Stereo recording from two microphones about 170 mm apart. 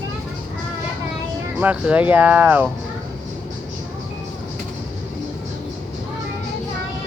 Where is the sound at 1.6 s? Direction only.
10° right (ahead or behind).